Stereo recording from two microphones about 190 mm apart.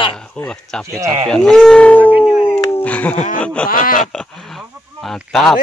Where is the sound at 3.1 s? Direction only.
40° left (ahead or behind).